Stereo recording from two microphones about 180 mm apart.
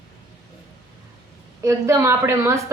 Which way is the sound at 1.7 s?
15° right (ahead or behind).